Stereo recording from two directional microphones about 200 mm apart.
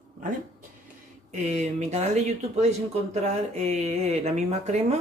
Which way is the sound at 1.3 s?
35° right (ahead or behind).